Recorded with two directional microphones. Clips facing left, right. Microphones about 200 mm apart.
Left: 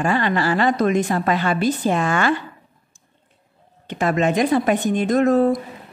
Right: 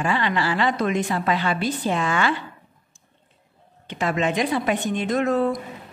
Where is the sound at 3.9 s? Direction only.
45° left (ahead or behind).